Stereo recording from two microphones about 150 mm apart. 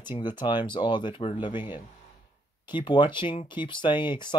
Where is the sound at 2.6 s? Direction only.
30° left (ahead or behind).